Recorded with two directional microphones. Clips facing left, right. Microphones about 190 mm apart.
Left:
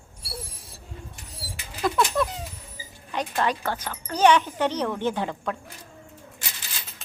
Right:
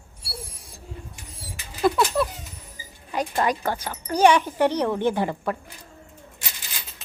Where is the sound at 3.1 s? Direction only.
10° right (ahead or behind).